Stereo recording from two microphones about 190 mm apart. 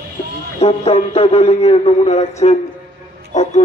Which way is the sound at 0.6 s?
30° left (ahead or behind).